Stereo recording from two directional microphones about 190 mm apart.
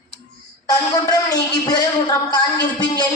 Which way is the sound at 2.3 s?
20° left (ahead or behind).